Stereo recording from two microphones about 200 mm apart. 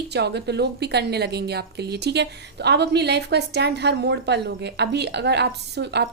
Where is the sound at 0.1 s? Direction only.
55° right (ahead or behind).